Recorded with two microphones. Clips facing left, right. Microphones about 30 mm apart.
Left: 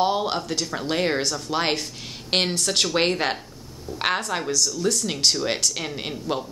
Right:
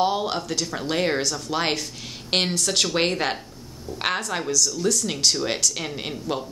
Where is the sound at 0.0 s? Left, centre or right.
Centre.